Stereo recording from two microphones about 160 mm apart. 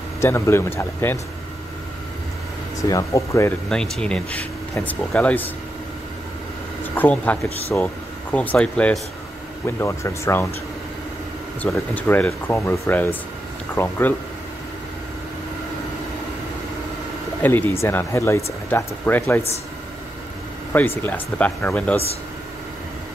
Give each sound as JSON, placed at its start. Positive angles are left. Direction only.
{"t": 0.2, "sound": "speech", "side_deg": 15}
{"t": 2.8, "sound": "speech", "side_deg": 20}
{"t": 3.6, "sound": "speech", "side_deg": 5}
{"t": 7.0, "sound": "speech", "side_deg": 10}
{"t": 9.7, "sound": "speech", "side_deg": 15}
{"t": 11.6, "sound": "speech", "side_deg": 10}
{"t": 17.4, "sound": "speech", "side_deg": 10}
{"t": 20.7, "sound": "speech", "side_deg": 10}